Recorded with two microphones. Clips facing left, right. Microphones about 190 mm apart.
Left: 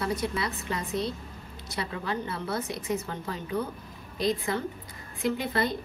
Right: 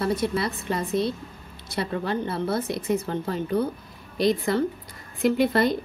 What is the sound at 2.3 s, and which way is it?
Speech, 35° right (ahead or behind).